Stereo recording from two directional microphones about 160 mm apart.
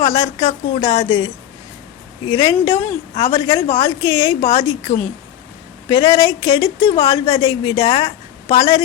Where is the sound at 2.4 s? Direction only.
25° left (ahead or behind); by 4.9 s 40° left (ahead or behind).